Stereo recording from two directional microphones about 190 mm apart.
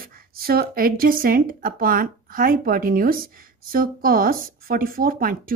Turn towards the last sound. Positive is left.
turn(degrees=-50)  # may be behind; listen again after turning